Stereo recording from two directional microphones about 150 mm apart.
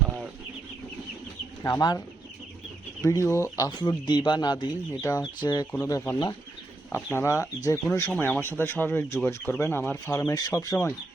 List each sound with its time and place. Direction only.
1.6 s speech: 25° left (ahead or behind)
3.0 s speech: 20° left (ahead or behind)
3.8 s speech: 30° left (ahead or behind)